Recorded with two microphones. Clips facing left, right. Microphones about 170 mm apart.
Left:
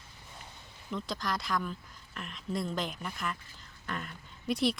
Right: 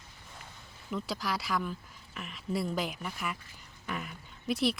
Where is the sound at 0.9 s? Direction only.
5° right (ahead or behind).